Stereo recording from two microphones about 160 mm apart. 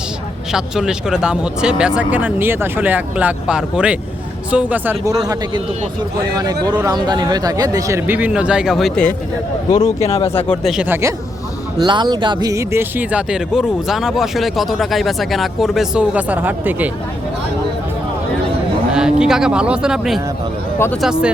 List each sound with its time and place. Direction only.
0.5 s a man's voice: 5° right (ahead or behind)
10.0 s speech: 40° left (ahead or behind)
10.3 s speech: 5° left (ahead or behind)
10.8 s speech: 15° right (ahead or behind)
11.8 s speech: 25° right (ahead or behind); by 16.9 s 10° right (ahead or behind)
18.9 s speech: 5° right (ahead or behind)
20.7 s speech: 15° left (ahead or behind)
21.0 s speech: 5° right (ahead or behind)